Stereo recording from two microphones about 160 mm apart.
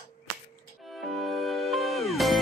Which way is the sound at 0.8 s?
Centre (ahead or behind).